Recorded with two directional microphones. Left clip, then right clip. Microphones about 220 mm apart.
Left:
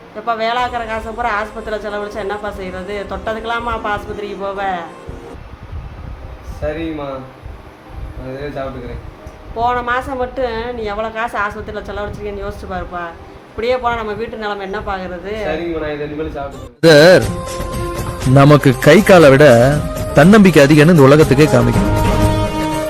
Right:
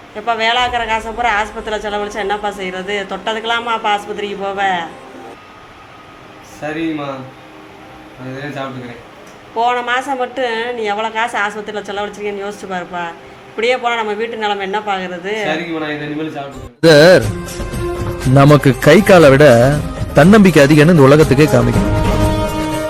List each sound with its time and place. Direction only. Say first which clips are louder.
0.3 s speech: right 3 dB; centre (ahead or behind)
9.6 s speech: right 1 dB; centre (ahead or behind)
16.8 s speech: even; centre (ahead or behind)